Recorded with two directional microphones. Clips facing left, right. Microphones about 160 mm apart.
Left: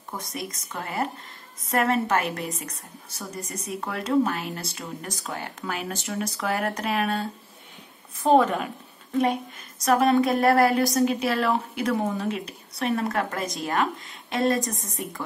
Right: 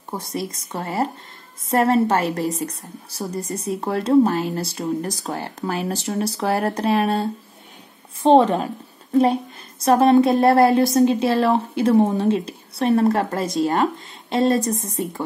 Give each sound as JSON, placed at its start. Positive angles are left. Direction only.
{"t": 0.1, "sound": "a woman's voice", "side_deg": -30}